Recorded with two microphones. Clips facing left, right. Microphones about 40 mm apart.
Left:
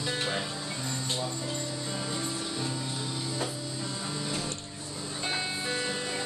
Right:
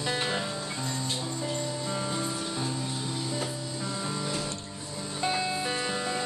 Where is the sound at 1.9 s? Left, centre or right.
Centre.